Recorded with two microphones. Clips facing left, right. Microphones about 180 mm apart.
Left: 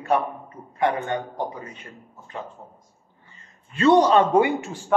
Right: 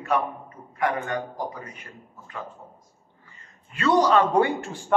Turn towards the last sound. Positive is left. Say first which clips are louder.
# left 2 dB
turn(degrees=20)  # may be behind; listen again after turning